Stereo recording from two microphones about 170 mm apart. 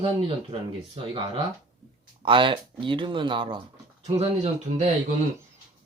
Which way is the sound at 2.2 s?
30° right (ahead or behind).